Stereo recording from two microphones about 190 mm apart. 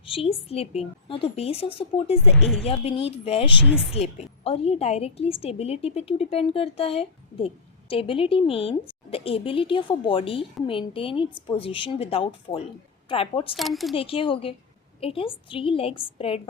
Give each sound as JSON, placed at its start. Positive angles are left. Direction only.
{"t": 0.0, "sound": "a woman's voice", "side_deg": 30}
{"t": 2.3, "sound": "speech", "side_deg": 0}
{"t": 2.6, "sound": "a woman's voice", "side_deg": 30}
{"t": 13.6, "sound": "speech", "side_deg": 0}
{"t": 13.9, "sound": "a woman's voice", "side_deg": 30}